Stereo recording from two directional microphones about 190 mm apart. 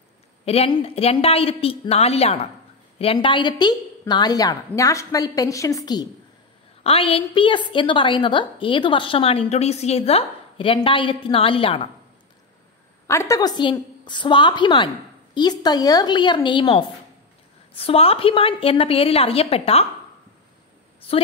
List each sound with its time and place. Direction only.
0.5 s a woman's voice: 30° left (ahead or behind)
6.8 s a woman's voice: 30° left (ahead or behind)
13.0 s a woman's voice: 15° left (ahead or behind); by 19.9 s 30° left (ahead or behind)